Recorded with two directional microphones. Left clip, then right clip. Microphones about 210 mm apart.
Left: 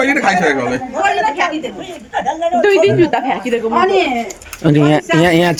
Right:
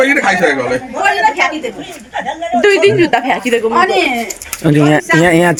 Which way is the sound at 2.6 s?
40° right (ahead or behind).